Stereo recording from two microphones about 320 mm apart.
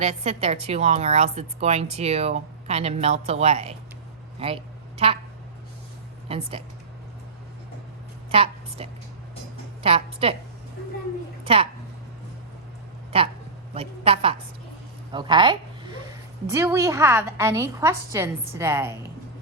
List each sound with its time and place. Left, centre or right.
0.0 s a woman's voice: centre
4.4 s a sound: centre
6.2 s speech: centre
8.3 s a sound: centre
9.8 s a woman's voice: centre
11.4 s a woman's voice: centre
13.1 s a woman's voice: centre